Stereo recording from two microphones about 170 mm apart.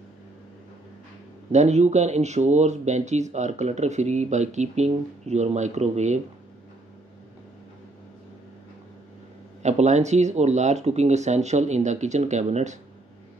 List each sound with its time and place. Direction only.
1.5 s speech: 40° right (ahead or behind)
9.6 s speech: 40° right (ahead or behind)